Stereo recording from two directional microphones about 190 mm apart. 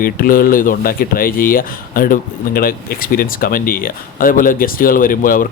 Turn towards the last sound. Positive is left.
turn(degrees=45)  # may be behind; listen again after turning